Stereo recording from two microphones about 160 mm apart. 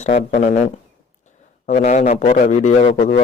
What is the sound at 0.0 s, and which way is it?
A man's voice, 40° left (ahead or behind).